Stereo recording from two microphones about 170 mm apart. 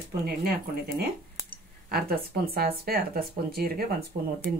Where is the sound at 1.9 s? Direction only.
65° right (ahead or behind).